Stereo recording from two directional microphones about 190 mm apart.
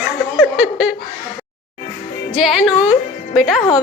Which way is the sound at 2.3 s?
Centre (ahead or behind).